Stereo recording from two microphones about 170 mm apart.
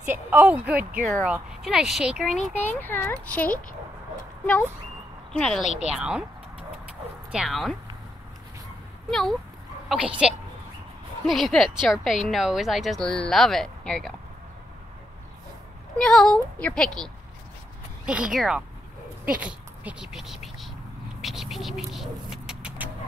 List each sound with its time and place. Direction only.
0.0 s speech: 10° right (ahead or behind)
2.3 s speech: 40° left (ahead or behind)
2.8 s speech: 10° left (ahead or behind)
5.3 s speech: 5° left (ahead or behind)
7.3 s speech: centre (ahead or behind)
9.1 s speech: centre (ahead or behind)
16.0 s speech: 5° left (ahead or behind)
18.0 s speech: 5° right (ahead or behind)
21.2 s vehicle: centre (ahead or behind)